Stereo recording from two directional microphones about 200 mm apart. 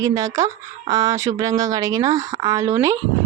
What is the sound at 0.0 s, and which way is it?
Speech, 15° right (ahead or behind).